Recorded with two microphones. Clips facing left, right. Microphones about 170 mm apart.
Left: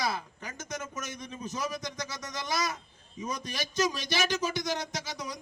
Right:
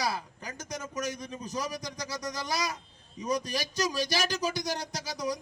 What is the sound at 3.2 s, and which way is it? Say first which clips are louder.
Speech: right 5 dB; 35° right (ahead or behind).